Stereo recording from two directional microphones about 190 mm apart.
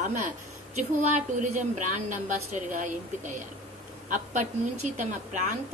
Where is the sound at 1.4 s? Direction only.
40° right (ahead or behind).